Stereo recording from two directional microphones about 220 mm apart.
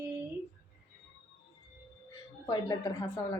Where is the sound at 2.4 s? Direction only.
15° left (ahead or behind).